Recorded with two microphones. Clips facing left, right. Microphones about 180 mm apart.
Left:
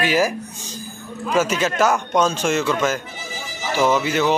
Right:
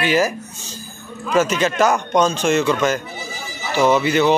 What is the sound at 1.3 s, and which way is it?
A man's voice, 5° left (ahead or behind).